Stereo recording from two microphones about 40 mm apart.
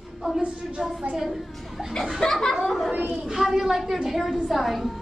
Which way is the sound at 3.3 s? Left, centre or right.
Centre.